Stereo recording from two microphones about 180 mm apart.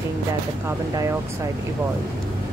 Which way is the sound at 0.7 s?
15° right (ahead or behind).